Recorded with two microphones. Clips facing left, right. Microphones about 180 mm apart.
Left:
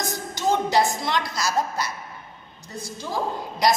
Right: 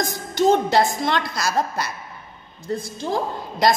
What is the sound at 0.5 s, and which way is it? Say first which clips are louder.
A woman's voice: right 2 dB; 60° right (ahead or behind).